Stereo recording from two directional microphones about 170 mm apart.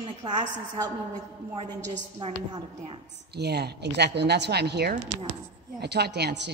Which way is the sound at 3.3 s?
75° right (ahead or behind).